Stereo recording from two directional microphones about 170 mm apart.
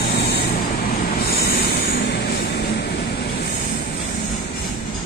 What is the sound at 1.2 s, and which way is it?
Vehicle, 65° left (ahead or behind).